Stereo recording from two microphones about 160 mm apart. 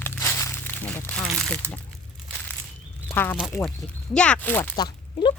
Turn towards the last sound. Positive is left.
turn(degrees=25)  # may be behind; listen again after turning